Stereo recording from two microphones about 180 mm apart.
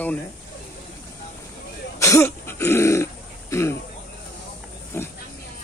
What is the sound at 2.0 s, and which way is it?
Throat clearing, 15° left (ahead or behind).